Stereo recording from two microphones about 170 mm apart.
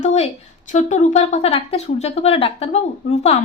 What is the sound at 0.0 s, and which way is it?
A woman's voice, 40° left (ahead or behind).